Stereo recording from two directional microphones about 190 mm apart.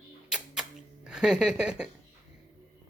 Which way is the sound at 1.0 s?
5° right (ahead or behind).